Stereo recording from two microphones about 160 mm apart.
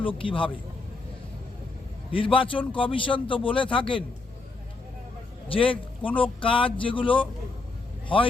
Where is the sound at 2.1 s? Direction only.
35° left (ahead or behind).